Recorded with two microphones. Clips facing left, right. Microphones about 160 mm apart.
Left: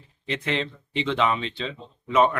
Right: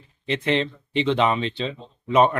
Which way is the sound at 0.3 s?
25° right (ahead or behind).